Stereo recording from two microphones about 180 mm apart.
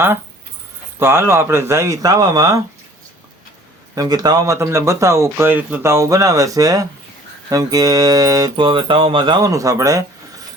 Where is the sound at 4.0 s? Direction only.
20° right (ahead or behind).